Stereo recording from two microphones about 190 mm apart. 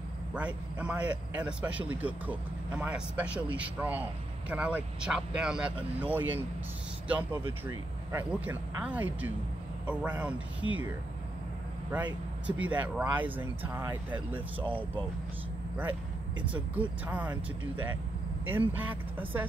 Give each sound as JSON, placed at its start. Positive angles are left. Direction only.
{"t": 0.3, "sound": "speech", "side_deg": -5}
{"t": 7.6, "sound": "speech", "side_deg": -10}
{"t": 12.4, "sound": "speech", "side_deg": -10}
{"t": 16.7, "sound": "speech", "side_deg": -10}
{"t": 18.5, "sound": "speech", "side_deg": -10}